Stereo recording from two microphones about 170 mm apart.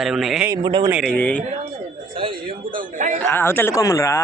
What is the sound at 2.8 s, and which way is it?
Speech, 45° right (ahead or behind).